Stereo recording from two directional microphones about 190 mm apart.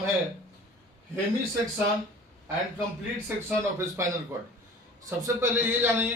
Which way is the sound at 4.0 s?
15° right (ahead or behind).